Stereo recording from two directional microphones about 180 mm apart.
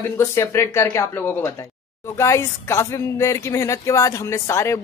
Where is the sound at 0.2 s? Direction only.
15° left (ahead or behind).